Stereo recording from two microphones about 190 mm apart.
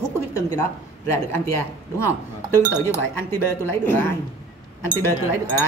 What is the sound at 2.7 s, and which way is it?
A woman's voice, 15° left (ahead or behind).